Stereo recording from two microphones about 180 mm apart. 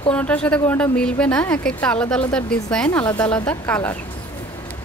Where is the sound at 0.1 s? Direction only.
5° left (ahead or behind).